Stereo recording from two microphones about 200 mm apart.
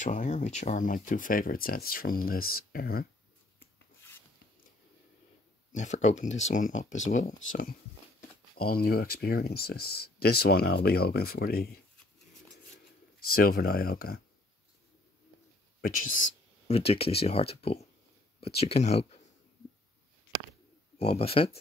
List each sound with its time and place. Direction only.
0.0 s speech: 40° left (ahead or behind)
3.5 s rub: 10° left (ahead or behind)
5.7 s speech: 35° left (ahead or behind)
8.5 s speech: 50° left (ahead or behind)
13.3 s speech: 50° left (ahead or behind)
15.8 s speech: 45° left (ahead or behind)
16.6 s speech: 30° left (ahead or behind)
21.0 s speech: 30° left (ahead or behind)